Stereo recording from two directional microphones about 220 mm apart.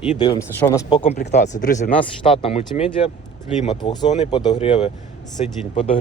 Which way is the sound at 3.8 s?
20° left (ahead or behind).